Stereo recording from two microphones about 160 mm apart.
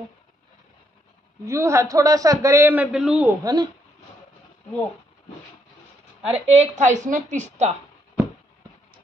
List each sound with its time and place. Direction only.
1.4 s a man's voice: 20° right (ahead or behind)
3.4 s a woman's voice: 25° right (ahead or behind)
6.2 s a woman's voice: 40° right (ahead or behind)